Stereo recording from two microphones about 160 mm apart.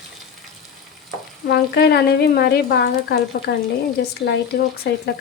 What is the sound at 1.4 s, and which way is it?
Speech, 90° left.